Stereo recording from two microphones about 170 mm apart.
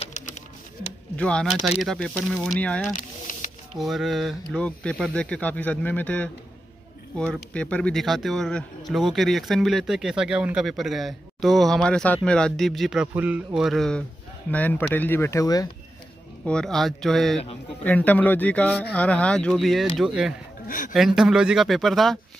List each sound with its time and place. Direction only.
1.1 s speech: 5° left (ahead or behind)
3.3 s snake: 50° left (ahead or behind)
3.7 s speech: centre (ahead or behind); by 15.7 s 20° left (ahead or behind)
16.4 s speech: 5° left (ahead or behind)
20.6 s a woman's voice: 55° left (ahead or behind)
20.9 s speech: centre (ahead or behind)